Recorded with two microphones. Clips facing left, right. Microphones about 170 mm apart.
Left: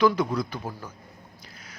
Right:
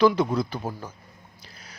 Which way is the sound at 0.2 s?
25° right (ahead or behind).